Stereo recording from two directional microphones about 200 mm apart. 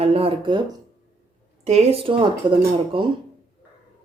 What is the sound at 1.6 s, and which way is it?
Speech, 30° right (ahead or behind).